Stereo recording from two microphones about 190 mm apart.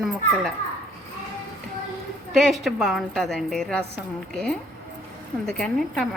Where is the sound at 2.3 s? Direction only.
Centre (ahead or behind).